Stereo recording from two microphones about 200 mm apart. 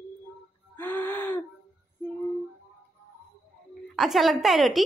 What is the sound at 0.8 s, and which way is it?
Wheeze, 10° left (ahead or behind).